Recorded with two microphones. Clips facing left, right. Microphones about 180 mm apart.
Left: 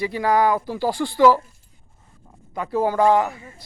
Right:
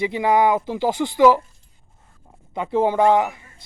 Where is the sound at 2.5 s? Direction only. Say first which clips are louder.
Right 2 dB; 25° right (ahead or behind).